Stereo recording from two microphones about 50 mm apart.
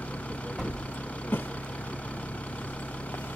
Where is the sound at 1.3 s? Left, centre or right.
Left.